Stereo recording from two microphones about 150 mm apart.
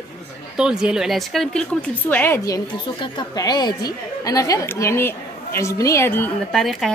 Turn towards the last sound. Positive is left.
turn(degrees=0)  # may be behind; listen again after turning